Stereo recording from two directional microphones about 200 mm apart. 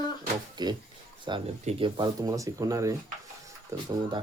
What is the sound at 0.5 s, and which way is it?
Speech, 20° right (ahead or behind).